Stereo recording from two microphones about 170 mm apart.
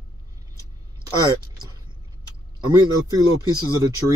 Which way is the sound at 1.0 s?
25° right (ahead or behind).